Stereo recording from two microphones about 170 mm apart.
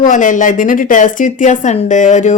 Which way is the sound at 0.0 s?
50° left (ahead or behind).